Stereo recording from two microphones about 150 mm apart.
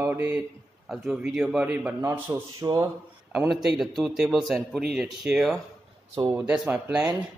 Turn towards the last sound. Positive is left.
turn(degrees=-10)  # may be behind; listen again after turning